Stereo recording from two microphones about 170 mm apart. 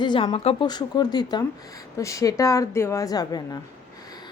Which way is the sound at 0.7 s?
25° left (ahead or behind).